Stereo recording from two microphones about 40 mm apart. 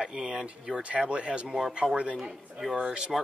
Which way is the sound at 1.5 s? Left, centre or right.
Centre.